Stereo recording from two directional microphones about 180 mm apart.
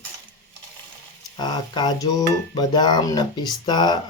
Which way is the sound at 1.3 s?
25° left (ahead or behind).